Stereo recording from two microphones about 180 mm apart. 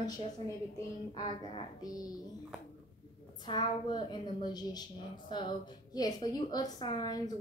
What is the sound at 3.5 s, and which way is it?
A woman's voice, 25° left (ahead or behind).